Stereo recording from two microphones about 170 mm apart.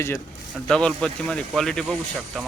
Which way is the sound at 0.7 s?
5° left (ahead or behind).